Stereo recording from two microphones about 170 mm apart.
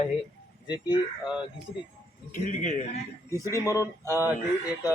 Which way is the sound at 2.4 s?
45° left (ahead or behind).